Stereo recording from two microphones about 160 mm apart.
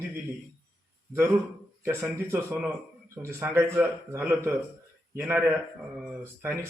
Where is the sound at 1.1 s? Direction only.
10° right (ahead or behind).